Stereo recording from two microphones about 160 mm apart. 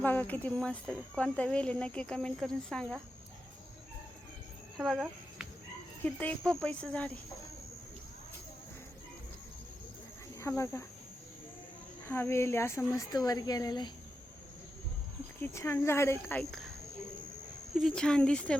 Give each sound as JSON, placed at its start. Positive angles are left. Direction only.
{"t": 0.0, "sound": "speech", "side_deg": 10}
{"t": 4.8, "sound": "a sound", "side_deg": 0}
{"t": 6.1, "sound": "speech", "side_deg": 10}
{"t": 10.4, "sound": "speech", "side_deg": 15}
{"t": 12.0, "sound": "speech", "side_deg": 15}
{"t": 15.4, "sound": "speech", "side_deg": 15}
{"t": 16.4, "sound": "speech", "side_deg": 0}
{"t": 17.7, "sound": "speech", "side_deg": 5}